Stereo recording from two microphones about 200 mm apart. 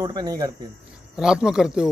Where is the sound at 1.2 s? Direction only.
5° right (ahead or behind).